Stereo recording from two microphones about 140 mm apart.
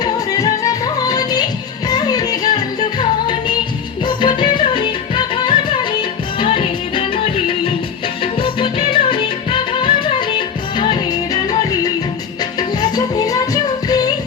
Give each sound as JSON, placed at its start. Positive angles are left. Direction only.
{"t": 0.0, "sound": "music", "side_deg": 25}
{"t": 12.4, "sound": "music", "side_deg": 30}